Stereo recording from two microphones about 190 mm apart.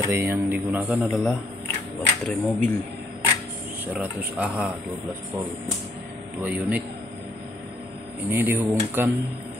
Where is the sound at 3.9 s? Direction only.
5° right (ahead or behind).